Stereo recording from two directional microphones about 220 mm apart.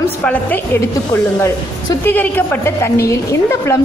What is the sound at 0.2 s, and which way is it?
A woman's voice, 5° left (ahead or behind).